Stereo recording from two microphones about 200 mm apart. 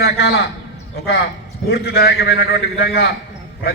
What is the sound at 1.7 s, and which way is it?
A man's voice, 55° left (ahead or behind).